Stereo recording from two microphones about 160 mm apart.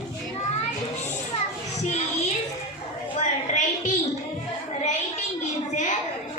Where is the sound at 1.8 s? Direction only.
45° left (ahead or behind).